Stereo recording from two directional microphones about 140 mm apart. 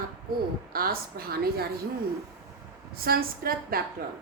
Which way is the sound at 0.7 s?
90° right.